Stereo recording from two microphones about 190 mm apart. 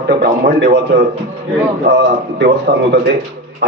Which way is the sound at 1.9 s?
65° right (ahead or behind).